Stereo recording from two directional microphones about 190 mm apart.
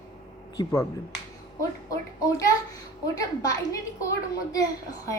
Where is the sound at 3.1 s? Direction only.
20° left (ahead or behind).